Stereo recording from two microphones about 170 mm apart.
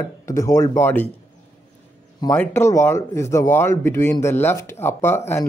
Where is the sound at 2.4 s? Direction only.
15° left (ahead or behind).